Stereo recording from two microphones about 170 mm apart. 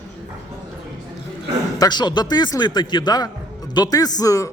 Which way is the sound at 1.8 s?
25° left (ahead or behind).